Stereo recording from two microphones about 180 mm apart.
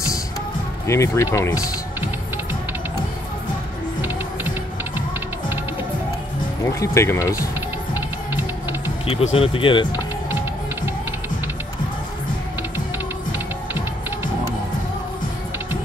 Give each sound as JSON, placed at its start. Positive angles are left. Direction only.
{"t": 0.8, "sound": "speech", "side_deg": 15}
{"t": 6.6, "sound": "speech", "side_deg": 15}
{"t": 9.0, "sound": "speech", "side_deg": 35}